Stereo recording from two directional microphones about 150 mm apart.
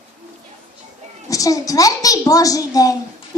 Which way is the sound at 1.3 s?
20° left (ahead or behind).